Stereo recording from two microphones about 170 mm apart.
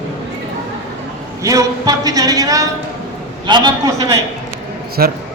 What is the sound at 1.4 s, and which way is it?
A man's voice, 20° right (ahead or behind).